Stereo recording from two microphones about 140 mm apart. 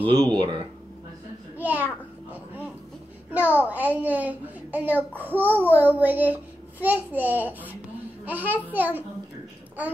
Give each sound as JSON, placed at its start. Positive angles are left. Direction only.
{"t": 0.2, "sound": "speech", "side_deg": -35}
{"t": 1.6, "sound": "a sound", "side_deg": -15}
{"t": 3.3, "sound": "a child's voice", "side_deg": -10}
{"t": 5.4, "sound": "a child's voice", "side_deg": 15}
{"t": 5.7, "sound": "a child's voice", "side_deg": -10}